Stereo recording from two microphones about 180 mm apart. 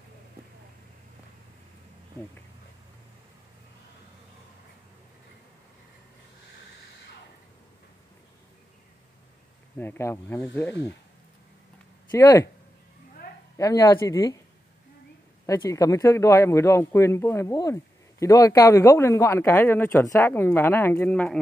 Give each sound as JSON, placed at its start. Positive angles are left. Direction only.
{"t": 9.8, "sound": "a man's voice", "side_deg": 10}
{"t": 12.1, "sound": "speech", "side_deg": 20}
{"t": 13.6, "sound": "speech", "side_deg": 20}
{"t": 15.4, "sound": "a man's voice", "side_deg": 15}